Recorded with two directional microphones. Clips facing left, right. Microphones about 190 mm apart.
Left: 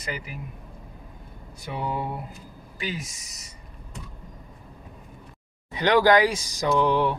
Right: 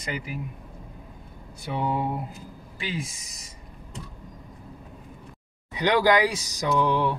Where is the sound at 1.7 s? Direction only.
25° right (ahead or behind).